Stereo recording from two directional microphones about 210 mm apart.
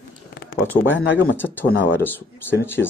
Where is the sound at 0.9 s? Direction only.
60° left (ahead or behind).